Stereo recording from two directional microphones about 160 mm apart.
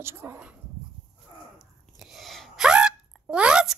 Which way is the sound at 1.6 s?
Centre (ahead or behind).